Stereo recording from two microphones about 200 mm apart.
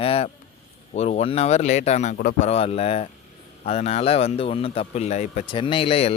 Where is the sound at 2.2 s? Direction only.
45° left (ahead or behind).